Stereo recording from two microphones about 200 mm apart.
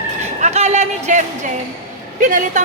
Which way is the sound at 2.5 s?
40° right (ahead or behind).